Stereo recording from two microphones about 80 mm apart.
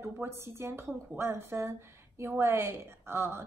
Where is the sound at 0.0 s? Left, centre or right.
Right.